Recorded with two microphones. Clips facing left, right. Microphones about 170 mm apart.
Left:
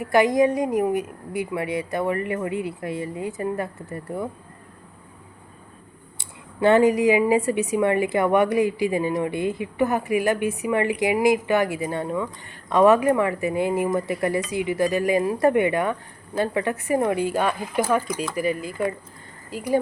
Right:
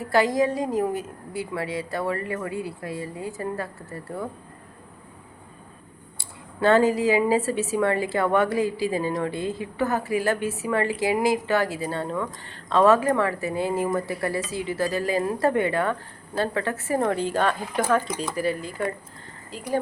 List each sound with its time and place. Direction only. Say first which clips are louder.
0.0 s a woman's voice: left 3 dB; 15° left (ahead or behind)
6.1 s a woman's voice: left 2 dB; 15° left (ahead or behind)